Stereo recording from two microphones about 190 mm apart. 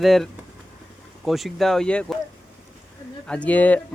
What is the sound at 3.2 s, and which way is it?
Speech, 5° left (ahead or behind).